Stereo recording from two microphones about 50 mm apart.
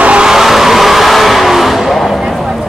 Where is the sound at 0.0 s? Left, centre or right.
Right.